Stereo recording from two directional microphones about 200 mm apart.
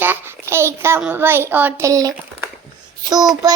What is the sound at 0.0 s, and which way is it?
A child's voice, 10° right (ahead or behind).